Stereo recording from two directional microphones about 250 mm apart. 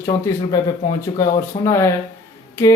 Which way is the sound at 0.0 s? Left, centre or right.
Centre.